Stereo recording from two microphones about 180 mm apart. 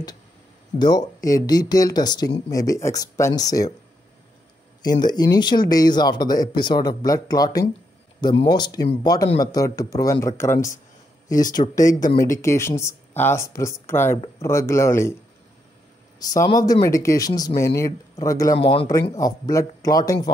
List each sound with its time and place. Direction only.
0.7 s speech: 20° left (ahead or behind)
4.8 s speech: 25° left (ahead or behind)
11.8 s speech: 20° left (ahead or behind)
16.2 s speech: 20° left (ahead or behind)
18.6 s speech: 30° left (ahead or behind)
19.1 s speech: 20° left (ahead or behind)